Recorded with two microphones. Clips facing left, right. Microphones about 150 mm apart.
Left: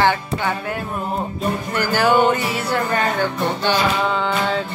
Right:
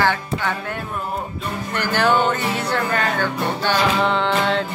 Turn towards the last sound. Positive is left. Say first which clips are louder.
# right 1 dB
turn(degrees=5)  # may be behind; listen again after turning